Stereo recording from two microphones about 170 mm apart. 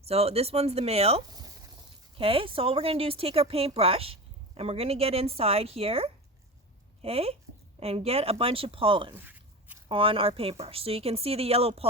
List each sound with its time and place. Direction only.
0.0 s speech: 35° right (ahead or behind)
9.1 s a sound: 10° right (ahead or behind)
9.9 s speech: 30° right (ahead or behind)